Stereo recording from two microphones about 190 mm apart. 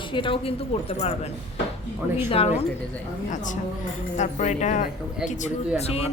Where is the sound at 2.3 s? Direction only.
30° left (ahead or behind).